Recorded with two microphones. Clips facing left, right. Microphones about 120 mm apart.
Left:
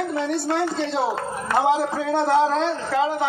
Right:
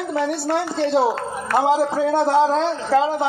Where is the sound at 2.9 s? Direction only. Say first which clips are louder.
Right 5 dB; 35° right (ahead or behind).